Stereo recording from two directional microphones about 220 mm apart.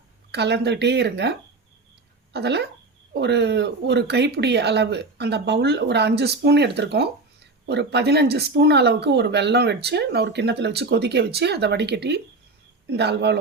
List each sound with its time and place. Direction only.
0.3 s speech: 50° right (ahead or behind)